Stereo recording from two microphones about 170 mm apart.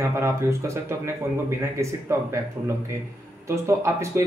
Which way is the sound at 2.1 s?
15° right (ahead or behind).